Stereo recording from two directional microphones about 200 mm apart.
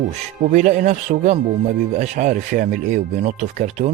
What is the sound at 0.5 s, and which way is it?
Speech, 35° right (ahead or behind).